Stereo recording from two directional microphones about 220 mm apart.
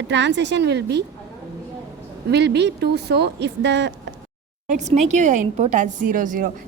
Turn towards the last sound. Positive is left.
turn(degrees=-35)  # may be behind; listen again after turning